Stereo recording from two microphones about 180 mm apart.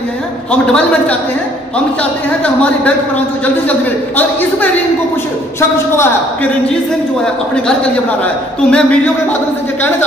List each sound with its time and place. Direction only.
0.5 s a man's voice: 5° left (ahead or behind)
4.2 s speech: 10° left (ahead or behind)
5.9 s speech: 10° left (ahead or behind)
8.6 s a man's voice: 5° left (ahead or behind)